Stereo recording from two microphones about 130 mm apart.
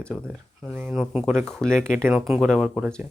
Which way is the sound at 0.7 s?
15° right (ahead or behind).